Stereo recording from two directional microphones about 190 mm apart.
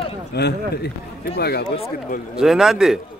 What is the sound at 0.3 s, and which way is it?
Speech, 60° left (ahead or behind).